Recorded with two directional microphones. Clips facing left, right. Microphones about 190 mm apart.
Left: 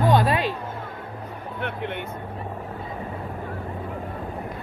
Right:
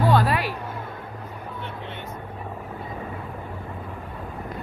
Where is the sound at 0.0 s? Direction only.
20° left (ahead or behind).